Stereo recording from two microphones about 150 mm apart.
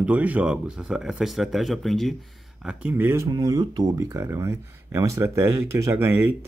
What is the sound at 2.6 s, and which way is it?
Speech, 10° right (ahead or behind).